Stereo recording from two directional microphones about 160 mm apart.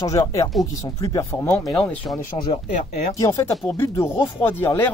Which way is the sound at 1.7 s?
5° left (ahead or behind).